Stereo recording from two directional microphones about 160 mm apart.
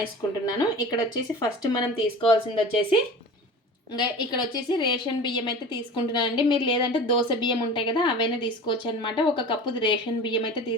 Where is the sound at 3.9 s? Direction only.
25° left (ahead or behind).